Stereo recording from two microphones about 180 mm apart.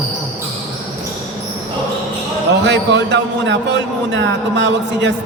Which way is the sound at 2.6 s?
80° right.